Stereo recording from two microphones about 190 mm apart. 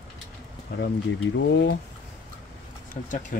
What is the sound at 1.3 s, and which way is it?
Speech, 70° left (ahead or behind).